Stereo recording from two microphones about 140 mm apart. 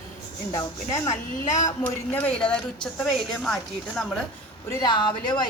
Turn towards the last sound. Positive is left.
turn(degrees=30)  # may be behind; listen again after turning